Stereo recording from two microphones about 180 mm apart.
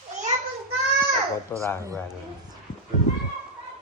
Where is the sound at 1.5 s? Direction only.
10° left (ahead or behind).